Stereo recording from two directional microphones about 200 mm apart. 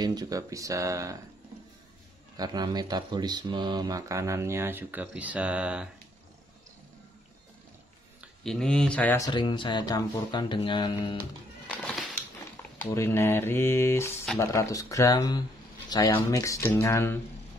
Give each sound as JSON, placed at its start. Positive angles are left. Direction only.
{"t": 0.0, "sound": "speech", "side_deg": -20}
{"t": 2.3, "sound": "speech", "side_deg": -20}
{"t": 8.5, "sound": "speech", "side_deg": 5}
{"t": 11.7, "sound": "a sound", "side_deg": 0}
{"t": 12.9, "sound": "speech", "side_deg": 15}